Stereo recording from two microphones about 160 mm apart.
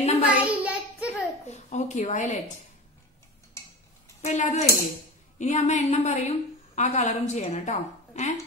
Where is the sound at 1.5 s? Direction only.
45° left (ahead or behind).